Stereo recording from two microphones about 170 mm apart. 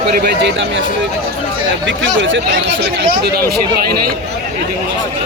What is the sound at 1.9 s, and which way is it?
Speech, 90° right.